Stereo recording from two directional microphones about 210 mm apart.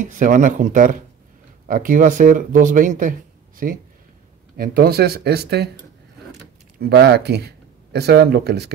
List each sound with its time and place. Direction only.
0.0 s speech: 35° right (ahead or behind)